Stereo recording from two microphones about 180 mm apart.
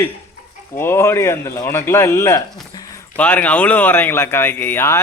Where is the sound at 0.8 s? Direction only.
15° left (ahead or behind).